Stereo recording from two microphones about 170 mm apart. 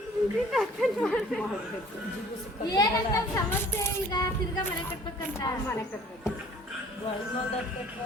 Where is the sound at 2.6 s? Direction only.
25° left (ahead or behind).